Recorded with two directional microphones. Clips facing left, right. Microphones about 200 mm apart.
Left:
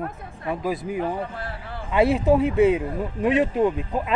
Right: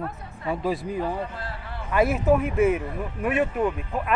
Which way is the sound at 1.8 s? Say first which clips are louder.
Left 2 dB; 30° left (ahead or behind).